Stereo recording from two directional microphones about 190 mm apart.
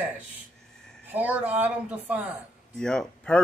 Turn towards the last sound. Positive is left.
turn(degrees=5)  # may be behind; listen again after turning